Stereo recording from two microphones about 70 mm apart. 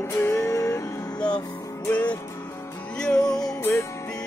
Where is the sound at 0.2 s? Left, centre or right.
Left.